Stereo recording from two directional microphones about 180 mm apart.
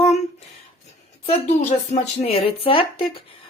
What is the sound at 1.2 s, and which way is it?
Speech, 35° left (ahead or behind).